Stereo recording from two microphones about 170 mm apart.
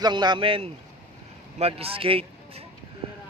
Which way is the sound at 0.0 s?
25° right (ahead or behind).